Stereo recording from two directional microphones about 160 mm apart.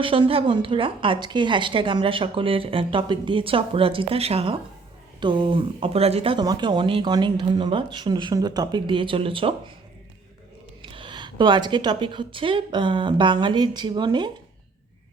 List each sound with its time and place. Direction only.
0.0 s a woman's voice: 35° right (ahead or behind)
10.8 s speech: 30° right (ahead or behind)